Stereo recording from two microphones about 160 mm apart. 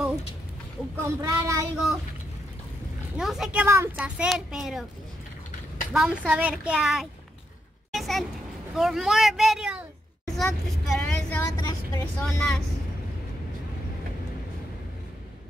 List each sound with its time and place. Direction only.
1.0 s speech: 20° right (ahead or behind)
3.2 s speech: 5° right (ahead or behind)
3.6 s speech: 15° right (ahead or behind)
5.9 s a woman's voice: 5° right (ahead or behind)
7.9 s a sound: centre (ahead or behind)
8.7 s speech: centre (ahead or behind)
10.3 s vehicle: centre (ahead or behind); by 12.0 s 20° left (ahead or behind)
12.0 s speech: 5° left (ahead or behind)